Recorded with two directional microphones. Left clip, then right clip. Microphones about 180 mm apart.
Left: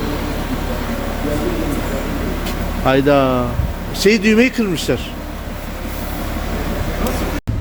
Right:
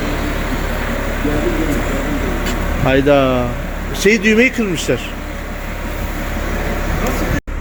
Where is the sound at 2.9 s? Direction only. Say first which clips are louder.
Right 1 dB; 5° left (ahead or behind).